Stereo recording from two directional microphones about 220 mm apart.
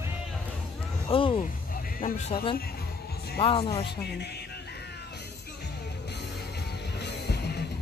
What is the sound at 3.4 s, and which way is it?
Speech, 25° left (ahead or behind).